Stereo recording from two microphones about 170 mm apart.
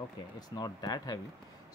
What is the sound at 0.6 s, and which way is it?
Speech, 25° left (ahead or behind).